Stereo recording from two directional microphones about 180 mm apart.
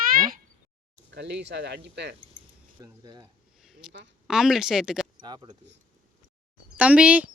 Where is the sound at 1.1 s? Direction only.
70° right (ahead or behind).